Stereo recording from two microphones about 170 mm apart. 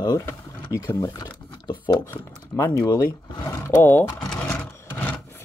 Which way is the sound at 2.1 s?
15° left (ahead or behind).